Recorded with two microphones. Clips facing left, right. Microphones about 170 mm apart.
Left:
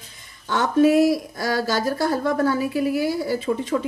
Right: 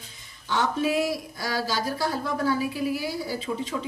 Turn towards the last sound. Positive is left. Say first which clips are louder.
# left 6 dB
turn(degrees=55)  # may be behind; listen again after turning